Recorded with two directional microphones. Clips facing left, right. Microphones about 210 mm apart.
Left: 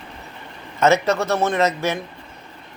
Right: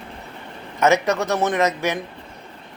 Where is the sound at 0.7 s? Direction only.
15° right (ahead or behind).